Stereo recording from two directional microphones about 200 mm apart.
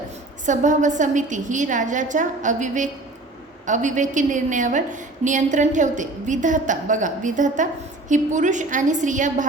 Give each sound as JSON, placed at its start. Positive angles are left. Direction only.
{"t": 0.4, "sound": "a woman's voice", "side_deg": -40}